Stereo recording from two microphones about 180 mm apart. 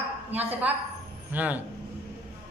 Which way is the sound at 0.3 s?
10° right (ahead or behind).